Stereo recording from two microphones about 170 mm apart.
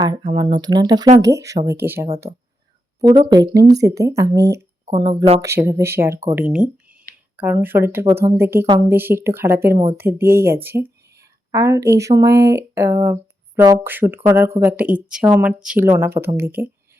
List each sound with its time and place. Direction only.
0.0 s speech: 25° right (ahead or behind)
2.3 s speech: 35° right (ahead or behind)
3.2 s speech: 20° right (ahead or behind)